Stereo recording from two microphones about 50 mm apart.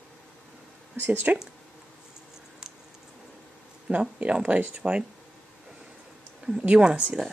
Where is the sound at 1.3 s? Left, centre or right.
Right.